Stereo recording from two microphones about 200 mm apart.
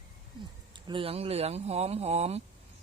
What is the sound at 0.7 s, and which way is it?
Speech, 25° right (ahead or behind).